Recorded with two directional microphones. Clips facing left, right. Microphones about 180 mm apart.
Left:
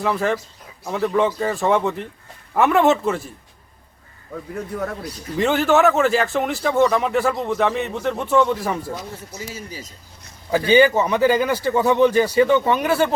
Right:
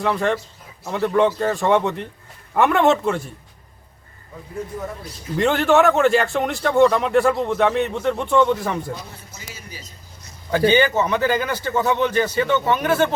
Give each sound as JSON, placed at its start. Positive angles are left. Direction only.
{"t": 0.0, "sound": "a man's voice", "side_deg": 0}
{"t": 5.4, "sound": "a man's voice", "side_deg": 0}
{"t": 10.8, "sound": "speech", "side_deg": 10}